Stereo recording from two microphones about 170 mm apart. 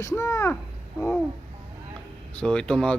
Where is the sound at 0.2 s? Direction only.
15° left (ahead or behind).